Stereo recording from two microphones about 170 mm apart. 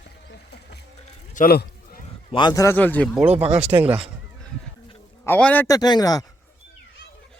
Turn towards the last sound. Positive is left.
turn(degrees=20)  # may be behind; listen again after turning